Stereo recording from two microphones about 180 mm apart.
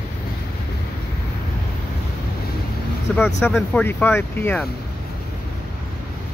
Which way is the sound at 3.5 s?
5° left (ahead or behind).